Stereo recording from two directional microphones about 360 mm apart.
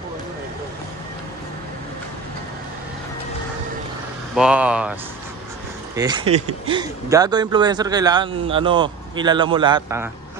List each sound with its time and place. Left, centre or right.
4.4 s speech: centre
5.9 s speech: centre